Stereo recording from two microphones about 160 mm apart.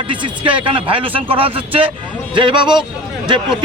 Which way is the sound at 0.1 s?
30° right (ahead or behind).